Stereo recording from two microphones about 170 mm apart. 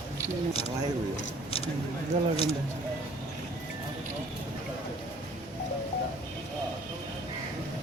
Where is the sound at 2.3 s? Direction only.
35° left (ahead or behind).